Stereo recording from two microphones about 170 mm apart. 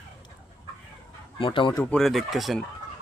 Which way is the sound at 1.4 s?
30° left (ahead or behind).